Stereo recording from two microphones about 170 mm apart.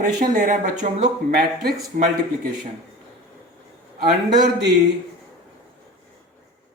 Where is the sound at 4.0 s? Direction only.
85° right.